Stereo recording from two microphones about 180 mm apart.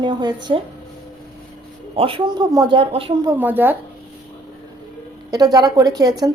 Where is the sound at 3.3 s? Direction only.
10° right (ahead or behind).